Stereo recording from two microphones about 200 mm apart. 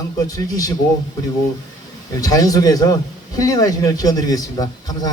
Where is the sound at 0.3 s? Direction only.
20° left (ahead or behind).